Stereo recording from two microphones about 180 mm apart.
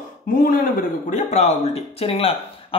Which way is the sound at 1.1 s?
40° left (ahead or behind).